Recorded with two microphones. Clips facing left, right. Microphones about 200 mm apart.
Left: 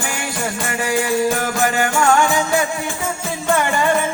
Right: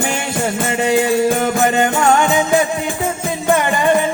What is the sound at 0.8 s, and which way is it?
Music, 20° right (ahead or behind).